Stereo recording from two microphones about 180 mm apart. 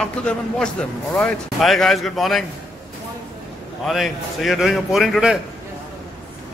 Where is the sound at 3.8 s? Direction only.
Centre (ahead or behind).